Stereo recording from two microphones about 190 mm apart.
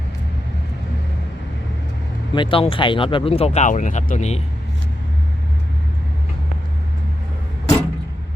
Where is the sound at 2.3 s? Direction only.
25° left (ahead or behind).